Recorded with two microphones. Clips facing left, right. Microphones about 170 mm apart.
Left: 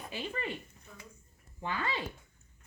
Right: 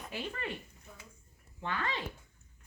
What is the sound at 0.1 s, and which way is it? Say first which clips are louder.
Speech: left 1 dB; centre (ahead or behind).